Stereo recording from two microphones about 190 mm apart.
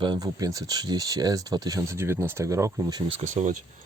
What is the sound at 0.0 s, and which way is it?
Speech, 20° right (ahead or behind).